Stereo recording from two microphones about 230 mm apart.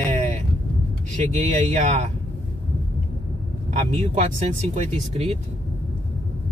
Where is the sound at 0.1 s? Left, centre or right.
Right.